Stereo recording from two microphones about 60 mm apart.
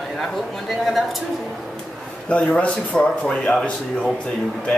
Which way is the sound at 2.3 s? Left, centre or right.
Centre.